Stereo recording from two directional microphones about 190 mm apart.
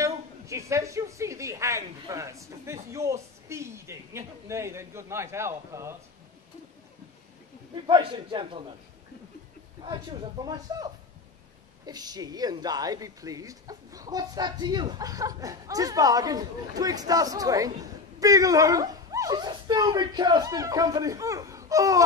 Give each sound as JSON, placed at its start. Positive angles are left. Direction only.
{"t": 0.0, "sound": "a woman's voice", "side_deg": -15}
{"t": 7.7, "sound": "speech", "side_deg": -25}
{"t": 10.4, "sound": "speech", "side_deg": -20}